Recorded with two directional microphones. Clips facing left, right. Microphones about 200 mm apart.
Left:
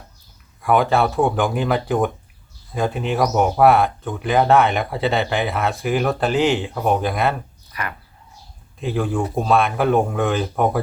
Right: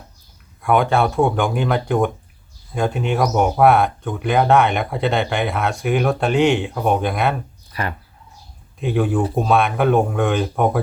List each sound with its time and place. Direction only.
0.6 s speech: centre (ahead or behind)
7.7 s speech: 30° right (ahead or behind)
8.8 s speech: centre (ahead or behind)